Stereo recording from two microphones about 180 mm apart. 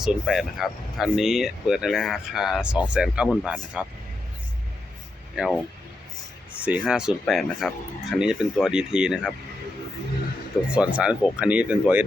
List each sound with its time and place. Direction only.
0.0 s speech: centre (ahead or behind)
5.3 s speech: 5° right (ahead or behind)
6.6 s speech: 10° right (ahead or behind)
10.8 s speech: 5° right (ahead or behind)